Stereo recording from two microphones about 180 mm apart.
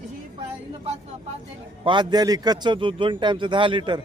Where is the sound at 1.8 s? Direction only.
25° right (ahead or behind).